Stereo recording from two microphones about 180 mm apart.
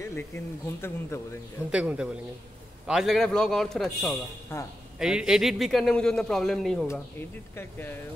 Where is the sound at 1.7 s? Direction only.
5° right (ahead or behind).